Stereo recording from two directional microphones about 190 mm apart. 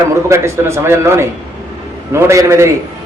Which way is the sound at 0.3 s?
15° right (ahead or behind).